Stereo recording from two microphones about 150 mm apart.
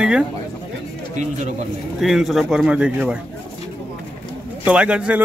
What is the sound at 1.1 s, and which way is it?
Speech, 55° right (ahead or behind).